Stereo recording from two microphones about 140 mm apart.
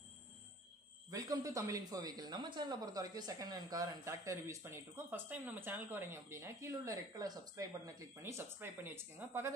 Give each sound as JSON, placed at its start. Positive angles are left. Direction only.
{"t": 1.1, "sound": "speech", "side_deg": -25}